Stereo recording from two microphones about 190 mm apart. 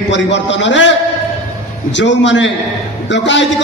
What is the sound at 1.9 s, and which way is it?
A man's voice, 70° left (ahead or behind).